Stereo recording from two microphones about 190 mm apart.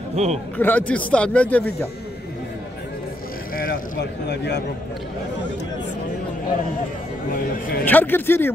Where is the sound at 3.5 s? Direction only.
45° left (ahead or behind).